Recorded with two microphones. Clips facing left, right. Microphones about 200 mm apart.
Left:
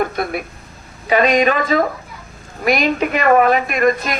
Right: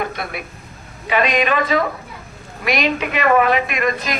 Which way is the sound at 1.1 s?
40° left (ahead or behind).